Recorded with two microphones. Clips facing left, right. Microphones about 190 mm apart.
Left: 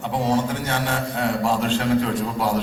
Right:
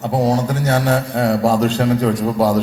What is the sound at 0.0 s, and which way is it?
A man's voice, 40° right (ahead or behind).